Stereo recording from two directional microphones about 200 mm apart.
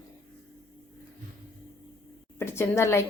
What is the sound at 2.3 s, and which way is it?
Speech, 10° left (ahead or behind).